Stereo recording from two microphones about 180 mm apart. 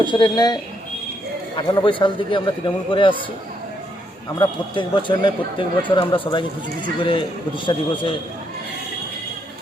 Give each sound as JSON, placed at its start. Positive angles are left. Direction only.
{"t": 0.0, "sound": "speech", "side_deg": 25}
{"t": 4.4, "sound": "speech", "side_deg": 25}